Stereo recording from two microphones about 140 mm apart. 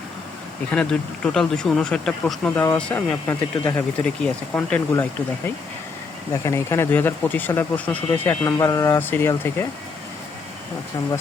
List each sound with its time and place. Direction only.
0.7 s speech: 5° left (ahead or behind)
2.6 s speech: 15° left (ahead or behind)
6.3 s speech: 20° left (ahead or behind)